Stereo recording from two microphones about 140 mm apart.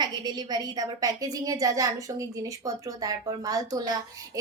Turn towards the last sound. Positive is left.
turn(degrees=-25)  # may be behind; listen again after turning